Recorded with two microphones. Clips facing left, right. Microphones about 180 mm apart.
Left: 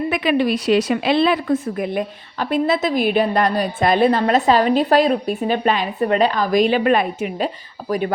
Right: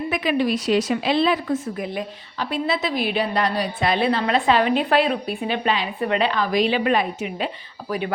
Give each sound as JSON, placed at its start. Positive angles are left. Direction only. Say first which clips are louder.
{"t": 0.1, "sound": "speech", "louder": "left 2 dB", "side_deg": 65}